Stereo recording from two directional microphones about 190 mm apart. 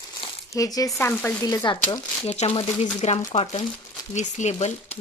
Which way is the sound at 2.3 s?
30° left (ahead or behind).